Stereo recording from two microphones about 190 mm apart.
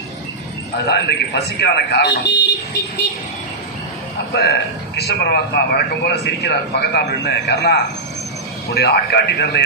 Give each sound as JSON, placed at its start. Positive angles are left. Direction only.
{"t": 0.9, "sound": "a man's voice", "side_deg": 60}
{"t": 4.9, "sound": "a man's voice", "side_deg": 60}